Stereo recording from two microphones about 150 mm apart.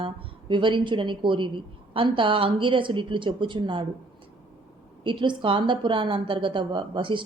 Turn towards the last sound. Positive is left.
turn(degrees=-35)  # may be behind; listen again after turning